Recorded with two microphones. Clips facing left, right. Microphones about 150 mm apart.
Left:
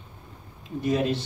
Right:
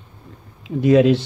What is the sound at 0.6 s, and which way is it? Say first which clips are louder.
Speech: right 11 dB; 90° right.